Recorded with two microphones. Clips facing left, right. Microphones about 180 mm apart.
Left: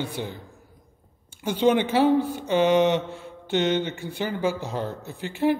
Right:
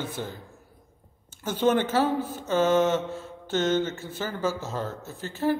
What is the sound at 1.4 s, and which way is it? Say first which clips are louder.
A man's voice: left 2 dB; 15° left (ahead or behind).